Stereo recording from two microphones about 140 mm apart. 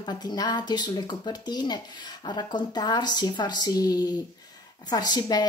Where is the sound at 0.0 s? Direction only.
30° left (ahead or behind).